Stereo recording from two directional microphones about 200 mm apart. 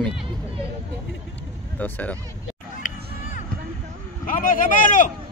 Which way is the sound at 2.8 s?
40° left (ahead or behind).